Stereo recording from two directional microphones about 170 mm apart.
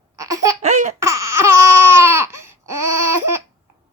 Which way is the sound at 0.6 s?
45° right (ahead or behind).